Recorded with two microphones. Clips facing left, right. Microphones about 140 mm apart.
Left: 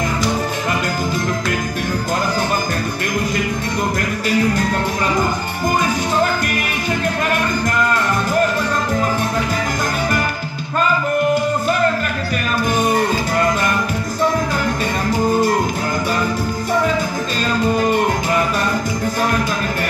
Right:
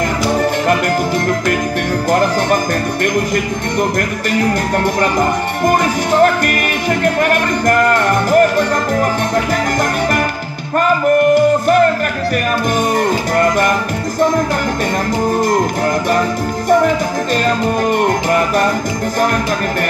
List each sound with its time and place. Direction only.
7.6 s music: 65° right (ahead or behind)